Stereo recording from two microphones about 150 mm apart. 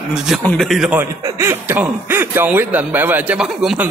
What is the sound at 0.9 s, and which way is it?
Speech, 15° right (ahead or behind).